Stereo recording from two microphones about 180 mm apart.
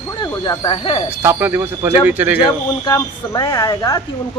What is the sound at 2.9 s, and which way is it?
Speech, 20° left (ahead or behind).